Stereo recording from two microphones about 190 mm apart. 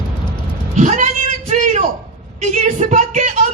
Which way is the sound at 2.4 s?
35° right (ahead or behind).